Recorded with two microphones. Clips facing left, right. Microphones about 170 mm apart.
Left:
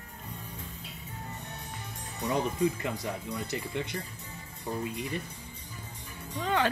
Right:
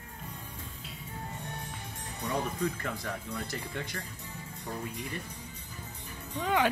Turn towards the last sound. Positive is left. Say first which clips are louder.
# even
turn(degrees=-10)  # may be behind; listen again after turning